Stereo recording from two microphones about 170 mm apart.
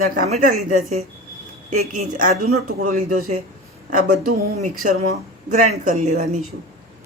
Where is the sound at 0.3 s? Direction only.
50° right (ahead or behind).